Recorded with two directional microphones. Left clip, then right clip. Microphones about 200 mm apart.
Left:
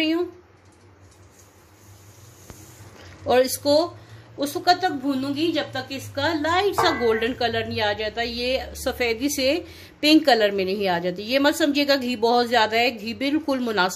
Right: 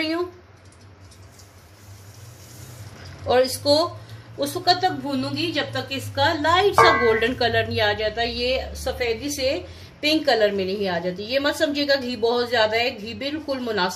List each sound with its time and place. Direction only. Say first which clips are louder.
3.3 s a woman's voice: even; 35° left (ahead or behind)